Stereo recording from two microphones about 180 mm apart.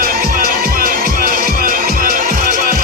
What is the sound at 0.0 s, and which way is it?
Music, 50° right (ahead or behind).